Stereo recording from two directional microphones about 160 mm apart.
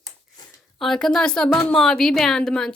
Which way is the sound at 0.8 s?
5° left (ahead or behind).